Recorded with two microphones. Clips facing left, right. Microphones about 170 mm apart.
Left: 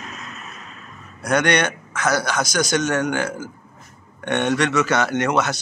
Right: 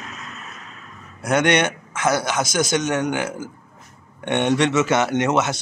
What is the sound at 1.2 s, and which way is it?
A man's voice, 25° right (ahead or behind).